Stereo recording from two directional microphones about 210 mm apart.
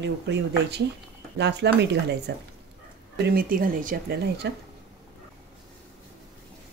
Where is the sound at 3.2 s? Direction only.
45° right (ahead or behind).